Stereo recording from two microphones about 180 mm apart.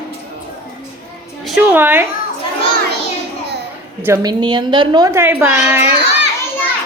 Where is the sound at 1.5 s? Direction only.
5° right (ahead or behind).